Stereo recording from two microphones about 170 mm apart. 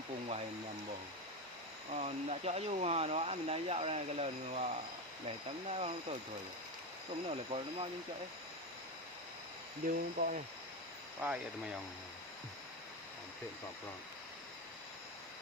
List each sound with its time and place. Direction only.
1.9 s speech: 40° right (ahead or behind)
7.3 s speech: 35° right (ahead or behind)
9.8 s speech: 60° right (ahead or behind)
11.2 s speech: 10° right (ahead or behind)